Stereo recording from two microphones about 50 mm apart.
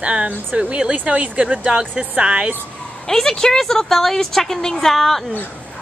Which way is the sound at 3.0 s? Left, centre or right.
Centre.